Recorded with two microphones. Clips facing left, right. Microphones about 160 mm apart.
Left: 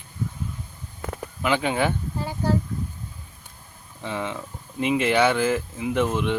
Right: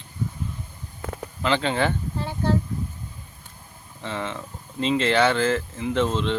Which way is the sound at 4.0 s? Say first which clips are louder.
Left 1 dB; 10° left (ahead or behind).